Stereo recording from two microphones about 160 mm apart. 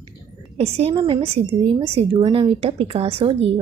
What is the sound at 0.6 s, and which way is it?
A woman's voice, 35° right (ahead or behind).